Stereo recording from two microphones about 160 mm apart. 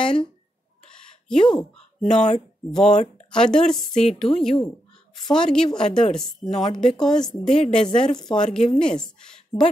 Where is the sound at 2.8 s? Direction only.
45° left (ahead or behind).